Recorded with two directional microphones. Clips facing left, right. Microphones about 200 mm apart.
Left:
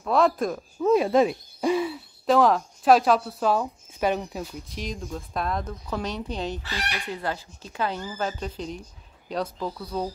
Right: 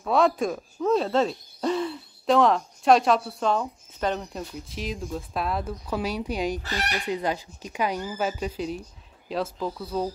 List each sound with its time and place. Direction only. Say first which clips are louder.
0.0 s hoot: even; centre (ahead or behind)
6.6 s speech: right 3 dB; 40° right (ahead or behind)
7.1 s speech: right 4 dB; 15° right (ahead or behind)
9.3 s hoot: right 1 dB; centre (ahead or behind)